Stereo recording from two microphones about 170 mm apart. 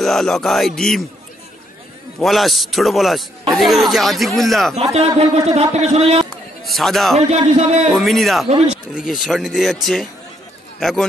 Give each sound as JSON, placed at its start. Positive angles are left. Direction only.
{"t": 0.0, "sound": "a man's voice", "side_deg": 0}
{"t": 2.1, "sound": "a man's voice", "side_deg": 0}
{"t": 4.9, "sound": "a man's voice", "side_deg": -35}
{"t": 6.6, "sound": "a man's voice", "side_deg": 0}
{"t": 7.2, "sound": "a man's voice", "side_deg": -40}
{"t": 7.9, "sound": "a man's voice", "side_deg": 0}